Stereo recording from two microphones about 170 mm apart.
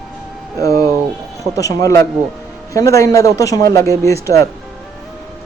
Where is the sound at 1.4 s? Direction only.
20° left (ahead or behind).